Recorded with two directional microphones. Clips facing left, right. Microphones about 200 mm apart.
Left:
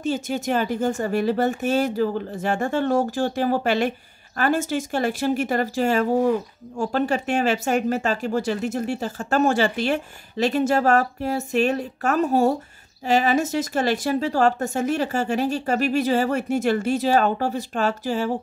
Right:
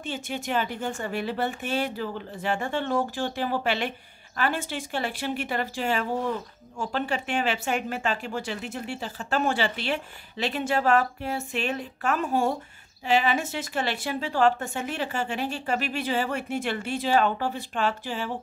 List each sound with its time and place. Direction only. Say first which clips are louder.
0.0 s speech: left 8 dB; 40° left (ahead or behind)